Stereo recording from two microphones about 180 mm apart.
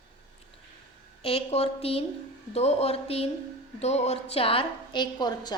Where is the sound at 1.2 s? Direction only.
35° left (ahead or behind).